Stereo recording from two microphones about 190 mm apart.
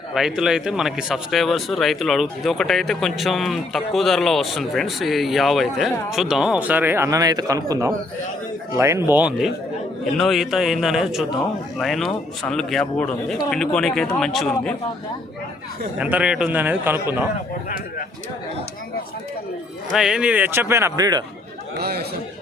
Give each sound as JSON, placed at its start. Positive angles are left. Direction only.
{"t": 0.1, "sound": "a man's voice", "side_deg": 0}
{"t": 16.0, "sound": "a man's voice", "side_deg": -5}
{"t": 20.0, "sound": "a man's voice", "side_deg": -5}
{"t": 21.8, "sound": "speech", "side_deg": -55}